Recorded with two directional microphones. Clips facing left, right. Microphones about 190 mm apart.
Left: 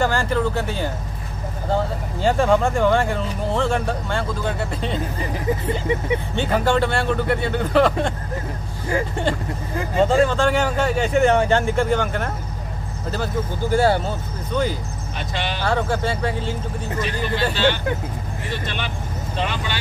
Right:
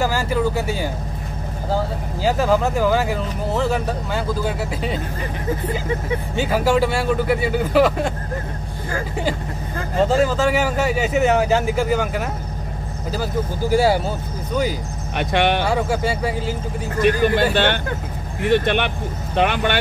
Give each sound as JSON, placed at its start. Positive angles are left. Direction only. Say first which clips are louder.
{"t": 0.0, "sound": "speech", "louder": "even", "side_deg": -5}
{"t": 6.3, "sound": "speech", "louder": "right 3 dB", "side_deg": -5}
{"t": 9.9, "sound": "speech", "louder": "even", "side_deg": -5}
{"t": 15.1, "sound": "speech", "louder": "right 10 dB", "side_deg": -60}
{"t": 15.6, "sound": "speech", "louder": "right 1 dB", "side_deg": -10}
{"t": 17.0, "sound": "speech", "louder": "right 8 dB", "side_deg": -55}